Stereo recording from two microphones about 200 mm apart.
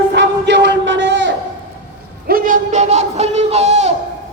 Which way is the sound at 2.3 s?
45° right (ahead or behind).